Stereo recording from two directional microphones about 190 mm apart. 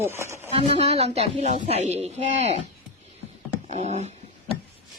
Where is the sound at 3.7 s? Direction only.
35° right (ahead or behind).